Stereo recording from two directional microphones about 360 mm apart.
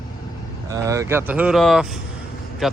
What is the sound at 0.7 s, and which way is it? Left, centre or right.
Speech, centre.